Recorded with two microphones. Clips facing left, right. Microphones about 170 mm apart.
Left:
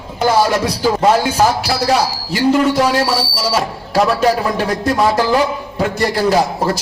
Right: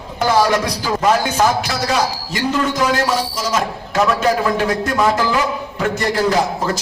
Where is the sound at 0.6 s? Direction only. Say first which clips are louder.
Left 4 dB; 30° left (ahead or behind).